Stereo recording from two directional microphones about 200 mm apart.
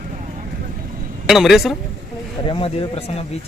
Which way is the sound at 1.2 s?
Centre (ahead or behind).